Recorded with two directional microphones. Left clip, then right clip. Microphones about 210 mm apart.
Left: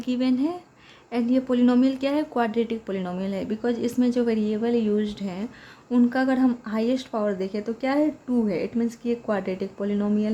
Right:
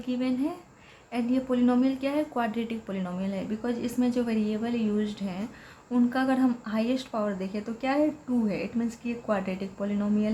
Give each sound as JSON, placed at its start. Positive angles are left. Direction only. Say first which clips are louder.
{"t": 0.1, "sound": "speech", "louder": "left 5 dB", "side_deg": 40}